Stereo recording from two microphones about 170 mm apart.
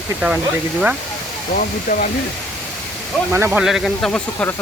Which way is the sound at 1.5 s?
55° left (ahead or behind).